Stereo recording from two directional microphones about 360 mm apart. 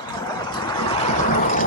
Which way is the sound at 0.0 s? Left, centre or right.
Centre.